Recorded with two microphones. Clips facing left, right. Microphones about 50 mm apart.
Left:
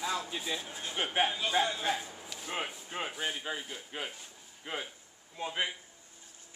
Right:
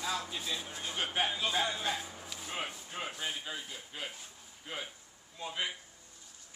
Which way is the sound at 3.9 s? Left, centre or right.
Left.